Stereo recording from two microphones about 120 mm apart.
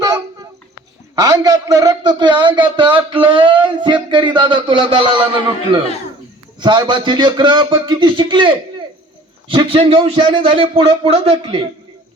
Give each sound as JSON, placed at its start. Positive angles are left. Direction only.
{"t": 1.1, "sound": "speech", "side_deg": -30}